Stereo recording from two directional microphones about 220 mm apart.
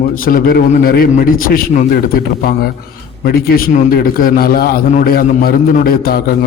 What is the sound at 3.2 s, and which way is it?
A man's voice, 45° left (ahead or behind).